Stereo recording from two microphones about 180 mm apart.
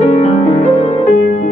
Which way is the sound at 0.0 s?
35° left (ahead or behind).